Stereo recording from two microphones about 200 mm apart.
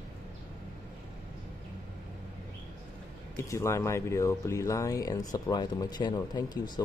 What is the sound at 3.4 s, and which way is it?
Speech, 15° left (ahead or behind).